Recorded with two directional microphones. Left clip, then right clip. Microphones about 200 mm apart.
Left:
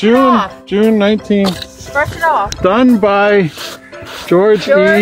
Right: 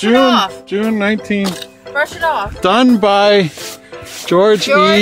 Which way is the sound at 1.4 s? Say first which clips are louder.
Left 5 dB; 25° left (ahead or behind).